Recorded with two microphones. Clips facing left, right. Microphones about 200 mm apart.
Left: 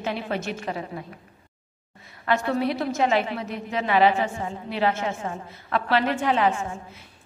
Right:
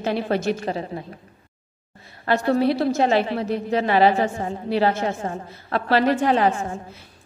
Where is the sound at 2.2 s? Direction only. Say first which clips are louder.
Right 4 dB; 35° right (ahead or behind).